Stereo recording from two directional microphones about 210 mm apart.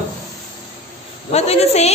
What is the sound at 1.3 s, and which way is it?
Speech, 30° left (ahead or behind).